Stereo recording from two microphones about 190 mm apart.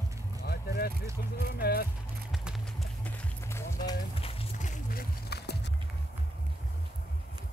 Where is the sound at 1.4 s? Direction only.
55° left (ahead or behind).